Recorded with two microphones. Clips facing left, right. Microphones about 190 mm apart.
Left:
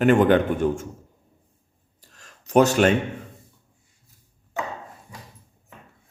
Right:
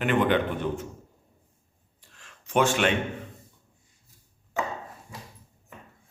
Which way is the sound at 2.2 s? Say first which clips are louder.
Left 6 dB; 40° left (ahead or behind).